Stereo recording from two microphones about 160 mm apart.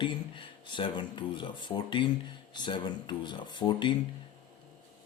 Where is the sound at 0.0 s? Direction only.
30° left (ahead or behind).